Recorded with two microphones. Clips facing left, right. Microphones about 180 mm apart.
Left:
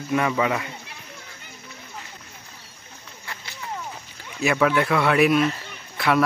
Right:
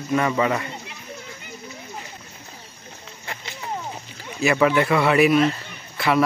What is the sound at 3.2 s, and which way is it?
Run, 20° right (ahead or behind).